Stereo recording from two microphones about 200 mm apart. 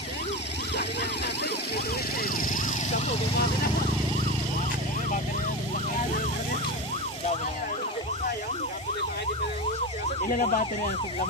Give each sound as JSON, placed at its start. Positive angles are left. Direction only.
{"t": 0.7, "sound": "music", "side_deg": 55}
{"t": 2.2, "sound": "vehicle", "side_deg": 40}
{"t": 10.2, "sound": "speech", "side_deg": 40}